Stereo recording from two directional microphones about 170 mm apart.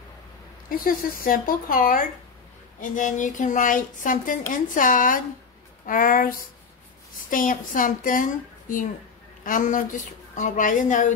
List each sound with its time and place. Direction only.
0.7 s a woman's voice: 55° left (ahead or behind)